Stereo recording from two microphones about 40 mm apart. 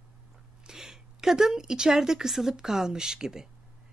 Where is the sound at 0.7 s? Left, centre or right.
Centre.